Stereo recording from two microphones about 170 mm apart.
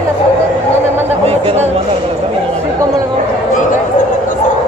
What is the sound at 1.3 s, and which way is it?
Chatter, 35° right (ahead or behind).